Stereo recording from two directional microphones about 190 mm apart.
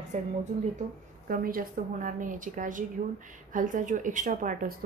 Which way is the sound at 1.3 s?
50° right (ahead or behind).